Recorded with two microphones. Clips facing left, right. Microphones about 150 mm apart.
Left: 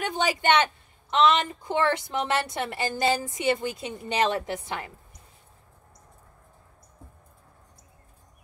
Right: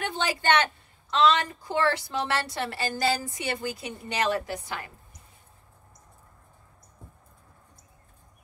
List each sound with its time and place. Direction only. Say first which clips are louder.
0.0 s a woman's voice: left 2 dB; 15° left (ahead or behind)